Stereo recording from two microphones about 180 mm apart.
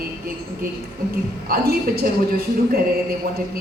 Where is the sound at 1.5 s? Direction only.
60° right (ahead or behind).